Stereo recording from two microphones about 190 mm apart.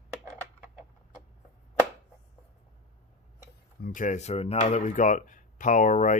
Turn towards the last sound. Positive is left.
turn(degrees=40)  # may be behind; listen again after turning